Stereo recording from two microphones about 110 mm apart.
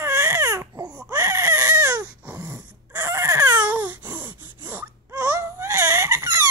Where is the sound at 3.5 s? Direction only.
15° right (ahead or behind).